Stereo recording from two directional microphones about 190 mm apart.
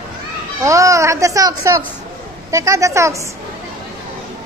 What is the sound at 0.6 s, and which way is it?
A child's voice, 15° right (ahead or behind).